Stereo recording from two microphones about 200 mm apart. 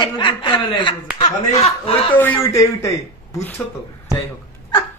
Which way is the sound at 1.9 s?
10° left (ahead or behind).